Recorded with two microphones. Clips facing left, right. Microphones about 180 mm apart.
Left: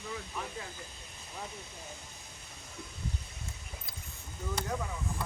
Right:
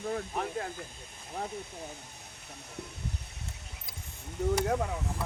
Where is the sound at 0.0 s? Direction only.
50° right (ahead or behind).